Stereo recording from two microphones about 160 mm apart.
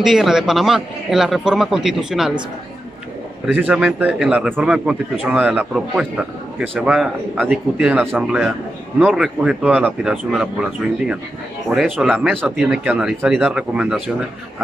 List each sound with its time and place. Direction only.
0.0 s a man's voice: centre (ahead or behind)
3.4 s a man's voice: 10° right (ahead or behind)
11.7 s a man's voice: 5° right (ahead or behind)